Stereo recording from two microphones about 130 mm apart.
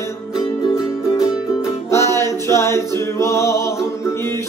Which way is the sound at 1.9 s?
20° left (ahead or behind).